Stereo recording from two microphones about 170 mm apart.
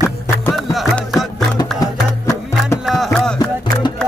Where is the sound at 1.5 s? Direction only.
20° left (ahead or behind).